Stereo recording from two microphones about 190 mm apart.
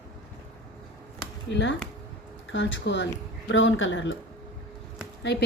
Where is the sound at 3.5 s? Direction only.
85° left.